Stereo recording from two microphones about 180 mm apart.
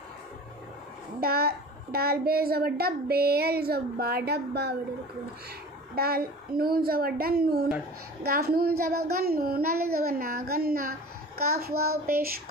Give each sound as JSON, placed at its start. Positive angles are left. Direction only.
{"t": 1.2, "sound": "a woman's voice", "side_deg": -60}
{"t": 5.9, "sound": "a woman's voice", "side_deg": -60}